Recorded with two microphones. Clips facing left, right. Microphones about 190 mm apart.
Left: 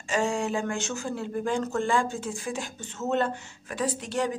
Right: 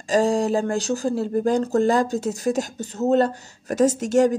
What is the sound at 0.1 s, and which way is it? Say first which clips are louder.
Speech: right 8 dB; 35° right (ahead or behind).